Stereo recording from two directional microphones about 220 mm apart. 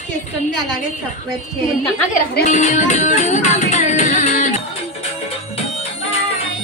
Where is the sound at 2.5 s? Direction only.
35° left (ahead or behind).